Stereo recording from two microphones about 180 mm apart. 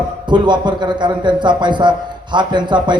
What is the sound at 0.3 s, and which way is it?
A man's voice, 25° right (ahead or behind).